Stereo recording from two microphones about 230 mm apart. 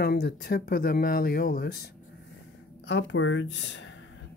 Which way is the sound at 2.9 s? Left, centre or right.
Left.